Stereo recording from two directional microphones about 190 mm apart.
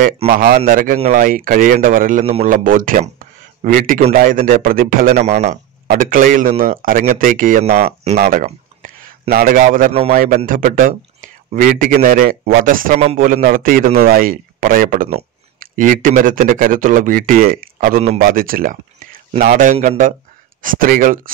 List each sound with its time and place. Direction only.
0.3 s a man's voice: 50° right (ahead or behind)